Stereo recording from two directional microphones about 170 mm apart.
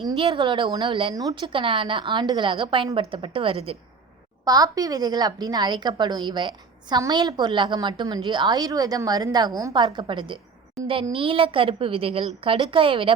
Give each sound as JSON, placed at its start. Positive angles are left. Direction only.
{"t": 0.2, "sound": "a woman's voice", "side_deg": -30}
{"t": 4.4, "sound": "a woman's voice", "side_deg": -20}
{"t": 10.8, "sound": "a sound", "side_deg": 0}
{"t": 11.1, "sound": "a woman's voice", "side_deg": -30}